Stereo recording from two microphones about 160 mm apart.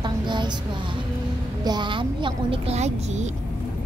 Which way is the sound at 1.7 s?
30° right (ahead or behind).